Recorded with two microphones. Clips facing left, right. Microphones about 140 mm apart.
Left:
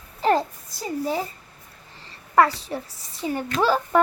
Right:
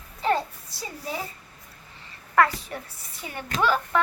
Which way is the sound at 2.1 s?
30° left (ahead or behind).